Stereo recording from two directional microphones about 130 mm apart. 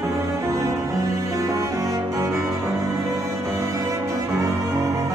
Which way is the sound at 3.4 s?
20° right (ahead or behind).